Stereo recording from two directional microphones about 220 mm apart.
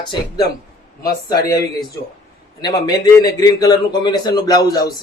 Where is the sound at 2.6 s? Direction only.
20° left (ahead or behind).